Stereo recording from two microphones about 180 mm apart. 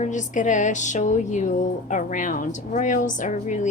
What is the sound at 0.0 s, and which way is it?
Speech, 45° left (ahead or behind).